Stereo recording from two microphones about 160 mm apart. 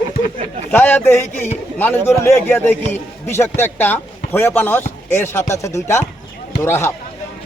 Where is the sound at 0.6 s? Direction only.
10° left (ahead or behind).